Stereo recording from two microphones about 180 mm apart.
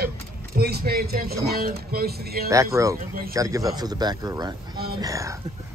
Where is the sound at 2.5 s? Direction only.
15° right (ahead or behind).